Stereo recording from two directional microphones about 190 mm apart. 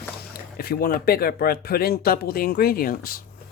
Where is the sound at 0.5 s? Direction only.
55° left (ahead or behind).